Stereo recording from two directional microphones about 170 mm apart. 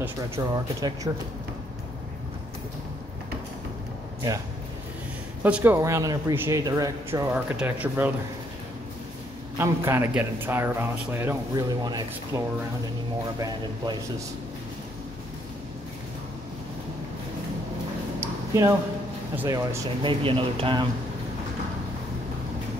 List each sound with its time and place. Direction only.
0.4 s a man's voice: 15° right (ahead or behind)
5.4 s speech: 10° right (ahead or behind)
7.3 s speech: 10° right (ahead or behind)
9.6 s a man's voice: 15° right (ahead or behind)
13.4 s a man's voice: 25° right (ahead or behind)
18.2 s a sound: 15° right (ahead or behind)
19.3 s speech: 15° right (ahead or behind)
20.0 s speech: 30° right (ahead or behind)